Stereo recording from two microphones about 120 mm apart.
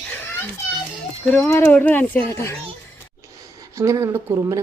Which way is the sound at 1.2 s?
15° left (ahead or behind).